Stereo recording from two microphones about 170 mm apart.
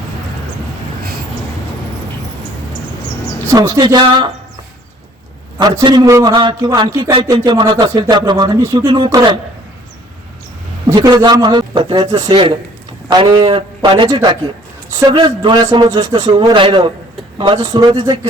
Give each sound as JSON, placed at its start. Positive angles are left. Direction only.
{"t": 3.5, "sound": "a man's voice", "side_deg": -20}
{"t": 5.5, "sound": "a man's voice", "side_deg": -25}
{"t": 10.9, "sound": "a man's voice", "side_deg": -25}